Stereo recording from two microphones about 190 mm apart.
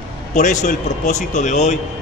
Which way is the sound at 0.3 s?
40° left (ahead or behind).